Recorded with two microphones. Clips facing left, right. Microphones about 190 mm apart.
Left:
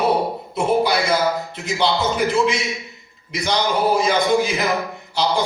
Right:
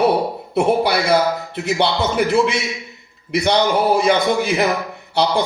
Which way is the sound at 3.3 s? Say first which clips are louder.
Right 5 dB; 60° right (ahead or behind).